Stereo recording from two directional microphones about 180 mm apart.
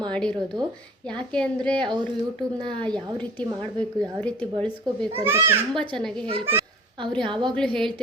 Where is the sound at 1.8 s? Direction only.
25° right (ahead or behind).